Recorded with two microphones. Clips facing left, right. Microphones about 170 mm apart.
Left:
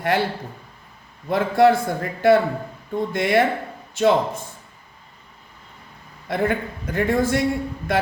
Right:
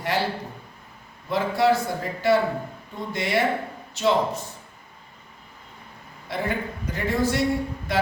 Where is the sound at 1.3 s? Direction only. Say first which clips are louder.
Left 5 dB; 55° left (ahead or behind).